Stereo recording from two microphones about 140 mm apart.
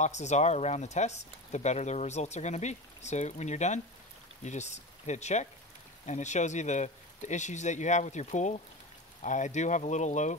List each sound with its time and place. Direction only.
0.0 s speech: 55° left (ahead or behind)